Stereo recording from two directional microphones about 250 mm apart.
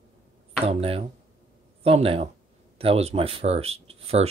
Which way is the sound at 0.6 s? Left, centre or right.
Right.